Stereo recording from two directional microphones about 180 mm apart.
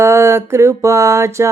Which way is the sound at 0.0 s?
15° right (ahead or behind).